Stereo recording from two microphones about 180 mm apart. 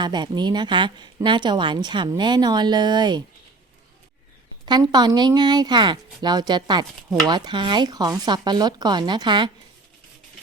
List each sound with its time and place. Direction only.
0.0 s a woman's voice: 25° right (ahead or behind)
4.6 s a woman's voice: 25° right (ahead or behind)